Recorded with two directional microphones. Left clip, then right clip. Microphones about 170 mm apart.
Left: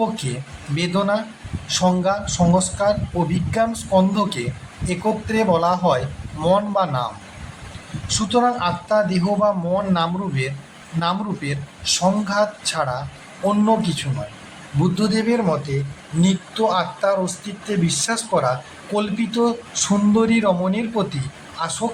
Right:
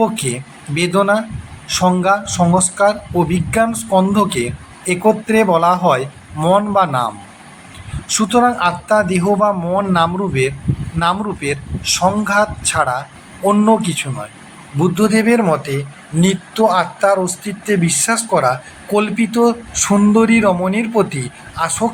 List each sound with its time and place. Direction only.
0.0 s a man's voice: 20° right (ahead or behind)
8.1 s a man's voice: 25° right (ahead or behind)